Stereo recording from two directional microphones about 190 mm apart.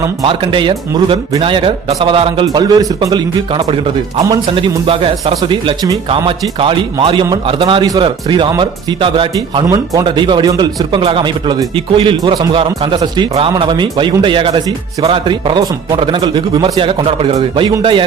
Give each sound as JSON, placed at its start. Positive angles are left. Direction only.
{"t": 0.2, "sound": "speech", "side_deg": -25}